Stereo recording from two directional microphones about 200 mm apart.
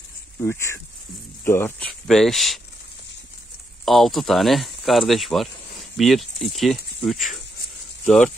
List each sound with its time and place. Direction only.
0.4 s speech: 15° left (ahead or behind)
3.8 s speech: centre (ahead or behind)